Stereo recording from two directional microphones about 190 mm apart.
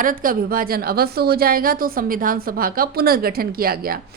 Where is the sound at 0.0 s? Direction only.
45° right (ahead or behind).